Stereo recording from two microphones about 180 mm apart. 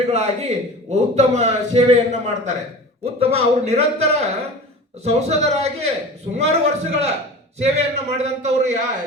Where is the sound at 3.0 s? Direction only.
35° right (ahead or behind).